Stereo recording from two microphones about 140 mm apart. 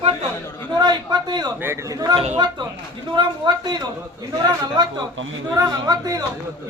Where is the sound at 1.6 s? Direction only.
20° right (ahead or behind).